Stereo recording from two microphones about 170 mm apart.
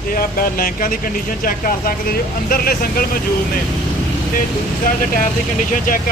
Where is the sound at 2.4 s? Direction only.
60° left (ahead or behind).